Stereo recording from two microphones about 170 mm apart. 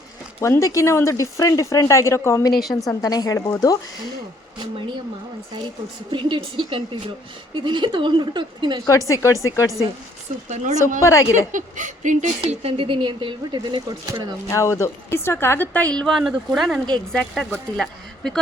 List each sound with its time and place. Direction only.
0.3 s a woman's voice: 15° left (ahead or behind)
6.1 s speech: 30° right (ahead or behind)
8.9 s speech: 20° left (ahead or behind)
10.5 s speech: 45° right (ahead or behind)
11.0 s a woman's voice: 15° left (ahead or behind)
11.5 s speech: 50° right (ahead or behind)
12.4 s speech: 35° right (ahead or behind)
14.5 s a woman's voice: 20° left (ahead or behind); by 18.3 s centre (ahead or behind)